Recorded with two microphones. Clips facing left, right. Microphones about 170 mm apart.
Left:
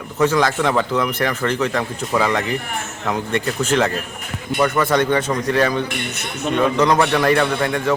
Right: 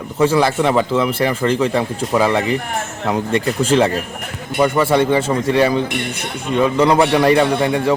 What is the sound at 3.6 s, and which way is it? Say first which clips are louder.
Speech: right 4 dB; 30° right (ahead or behind).